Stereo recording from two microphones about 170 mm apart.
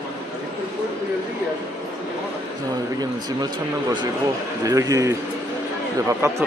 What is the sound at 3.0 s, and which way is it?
Speech, 25° right (ahead or behind).